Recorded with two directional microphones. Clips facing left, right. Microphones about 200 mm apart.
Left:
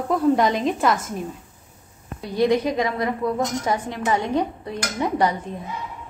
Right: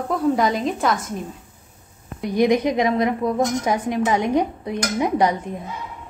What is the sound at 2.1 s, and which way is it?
A woman's voice, 15° right (ahead or behind).